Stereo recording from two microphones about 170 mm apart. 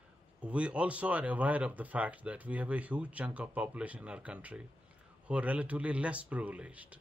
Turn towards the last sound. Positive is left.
turn(degrees=-10)  # may be behind; listen again after turning